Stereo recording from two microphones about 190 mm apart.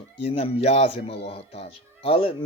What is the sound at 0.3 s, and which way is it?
Speech, 30° left (ahead or behind).